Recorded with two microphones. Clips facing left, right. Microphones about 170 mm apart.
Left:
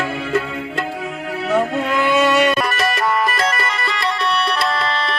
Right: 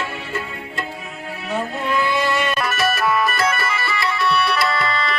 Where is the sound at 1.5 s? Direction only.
80° left.